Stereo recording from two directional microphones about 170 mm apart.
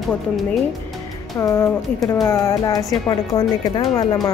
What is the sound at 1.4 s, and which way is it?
Speech, 15° left (ahead or behind).